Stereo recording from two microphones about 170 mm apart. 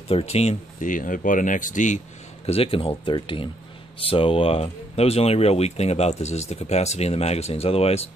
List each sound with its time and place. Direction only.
0.1 s speech: 40° left (ahead or behind)
2.4 s speech: 35° left (ahead or behind)